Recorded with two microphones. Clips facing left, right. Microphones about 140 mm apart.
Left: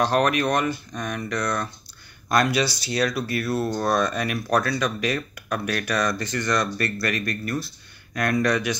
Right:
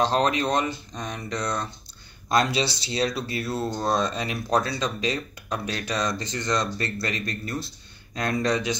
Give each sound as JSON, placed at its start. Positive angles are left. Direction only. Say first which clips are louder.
{"t": 0.0, "sound": "speech", "louder": "left 2 dB", "side_deg": -25}